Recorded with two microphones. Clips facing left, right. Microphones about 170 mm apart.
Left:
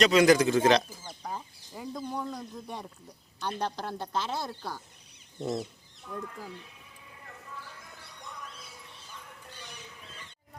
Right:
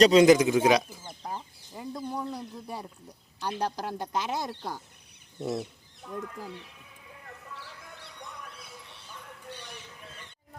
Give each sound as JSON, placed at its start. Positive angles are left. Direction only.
{"t": 0.0, "sound": "speech", "side_deg": -30}
{"t": 1.3, "sound": "speech", "side_deg": 0}
{"t": 5.4, "sound": "chicken", "side_deg": -5}
{"t": 6.0, "sound": "speech", "side_deg": -50}